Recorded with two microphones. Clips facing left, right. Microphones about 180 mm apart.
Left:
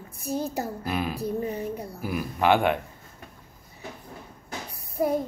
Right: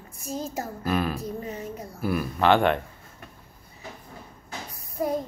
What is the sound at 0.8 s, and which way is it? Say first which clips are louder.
Speech: right 7 dB; 15° left (ahead or behind).